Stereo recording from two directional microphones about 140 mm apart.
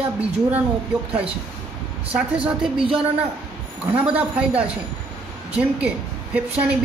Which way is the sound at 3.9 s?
10° right (ahead or behind).